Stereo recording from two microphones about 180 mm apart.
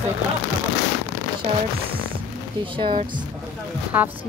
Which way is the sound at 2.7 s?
25° right (ahead or behind).